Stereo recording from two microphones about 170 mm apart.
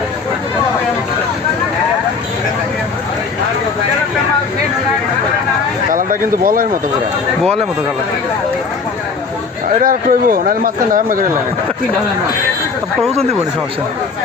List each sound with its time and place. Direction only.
5.9 s speech: 55° right (ahead or behind)
9.8 s speech: 55° right (ahead or behind)